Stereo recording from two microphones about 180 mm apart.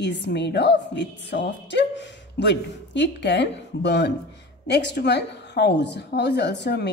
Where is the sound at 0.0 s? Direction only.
70° left (ahead or behind).